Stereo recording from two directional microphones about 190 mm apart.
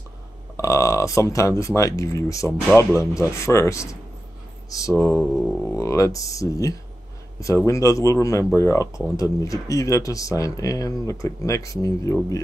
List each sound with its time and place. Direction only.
0.6 s speech: 15° left (ahead or behind)
5.1 s a sound: centre (ahead or behind)
5.7 s speech: 15° left (ahead or behind)